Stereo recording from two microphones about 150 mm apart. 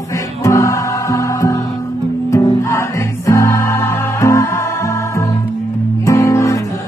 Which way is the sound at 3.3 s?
20° left (ahead or behind).